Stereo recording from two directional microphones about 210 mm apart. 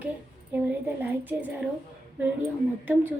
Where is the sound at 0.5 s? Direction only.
10° right (ahead or behind).